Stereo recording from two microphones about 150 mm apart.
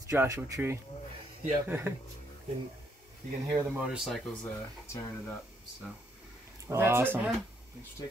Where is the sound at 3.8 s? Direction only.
5° right (ahead or behind).